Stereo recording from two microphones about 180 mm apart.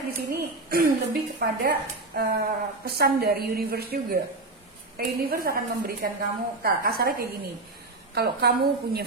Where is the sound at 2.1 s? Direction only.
55° right (ahead or behind).